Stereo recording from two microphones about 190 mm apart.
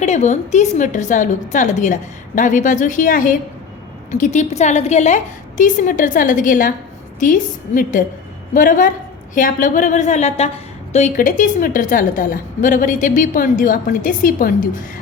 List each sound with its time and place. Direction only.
0.0 s a woman's voice: 35° left (ahead or behind)